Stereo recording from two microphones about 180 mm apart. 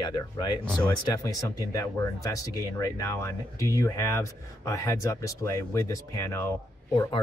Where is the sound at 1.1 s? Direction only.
20° left (ahead or behind).